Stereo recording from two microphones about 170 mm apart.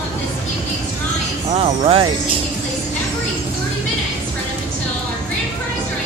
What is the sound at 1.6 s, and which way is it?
Speech, 35° right (ahead or behind).